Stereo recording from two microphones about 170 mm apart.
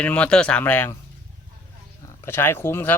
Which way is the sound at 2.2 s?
15° left (ahead or behind).